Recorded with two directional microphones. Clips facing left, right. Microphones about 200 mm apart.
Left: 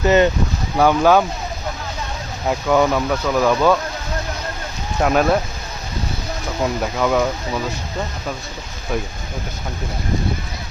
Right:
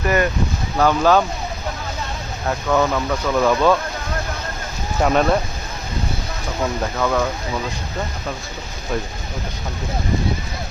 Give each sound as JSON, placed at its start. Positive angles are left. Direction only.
{"t": 0.0, "sound": "speech", "side_deg": 25}
{"t": 0.8, "sound": "speech", "side_deg": 10}
{"t": 2.5, "sound": "speech", "side_deg": 15}
{"t": 4.9, "sound": "speech", "side_deg": 5}
{"t": 6.9, "sound": "speech", "side_deg": 10}